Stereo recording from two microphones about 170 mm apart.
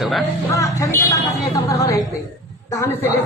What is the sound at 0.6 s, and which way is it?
A woman's voice, 20° left (ahead or behind).